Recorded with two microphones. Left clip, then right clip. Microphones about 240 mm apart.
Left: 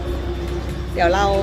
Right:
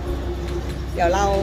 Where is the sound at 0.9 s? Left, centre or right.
Centre.